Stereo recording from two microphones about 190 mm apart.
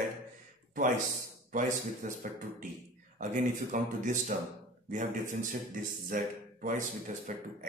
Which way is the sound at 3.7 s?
40° right (ahead or behind).